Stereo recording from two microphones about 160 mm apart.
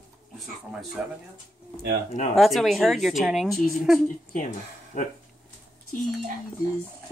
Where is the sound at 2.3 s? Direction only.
Centre (ahead or behind).